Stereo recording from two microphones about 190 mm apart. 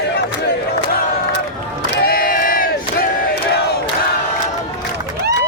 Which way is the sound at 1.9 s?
50° left (ahead or behind).